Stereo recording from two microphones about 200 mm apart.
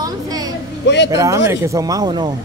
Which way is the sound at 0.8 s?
60° left (ahead or behind).